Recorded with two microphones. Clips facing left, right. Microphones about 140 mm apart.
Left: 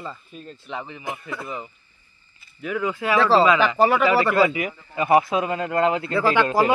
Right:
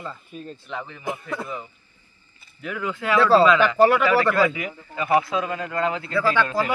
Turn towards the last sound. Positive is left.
turn(degrees=20)  # may be behind; listen again after turning